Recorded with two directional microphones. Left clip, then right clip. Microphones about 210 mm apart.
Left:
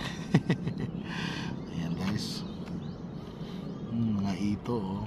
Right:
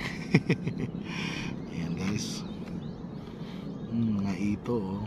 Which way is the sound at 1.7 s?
35° left (ahead or behind).